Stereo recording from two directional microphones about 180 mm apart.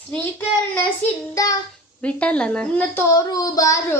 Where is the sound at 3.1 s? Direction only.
20° left (ahead or behind).